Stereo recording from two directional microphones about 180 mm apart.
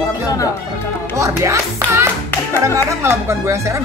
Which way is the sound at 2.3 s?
10° left (ahead or behind).